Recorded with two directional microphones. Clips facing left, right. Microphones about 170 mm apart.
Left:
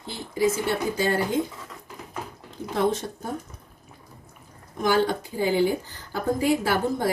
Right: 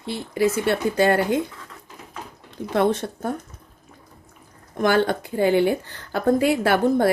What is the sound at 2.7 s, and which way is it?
Speech, 65° right (ahead or behind).